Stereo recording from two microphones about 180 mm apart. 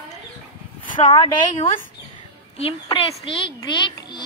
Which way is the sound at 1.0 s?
30° left (ahead or behind).